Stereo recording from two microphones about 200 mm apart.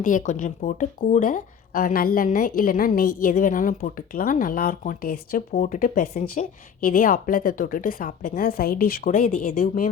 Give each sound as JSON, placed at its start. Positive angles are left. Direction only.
{"t": 0.0, "sound": "speech", "side_deg": 40}